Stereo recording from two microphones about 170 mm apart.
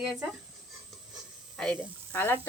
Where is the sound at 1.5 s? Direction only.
5° left (ahead or behind).